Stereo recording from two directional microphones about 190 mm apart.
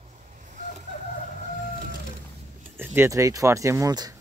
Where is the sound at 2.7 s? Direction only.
10° right (ahead or behind).